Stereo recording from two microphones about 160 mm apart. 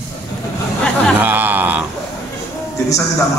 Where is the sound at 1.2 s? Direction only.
10° right (ahead or behind).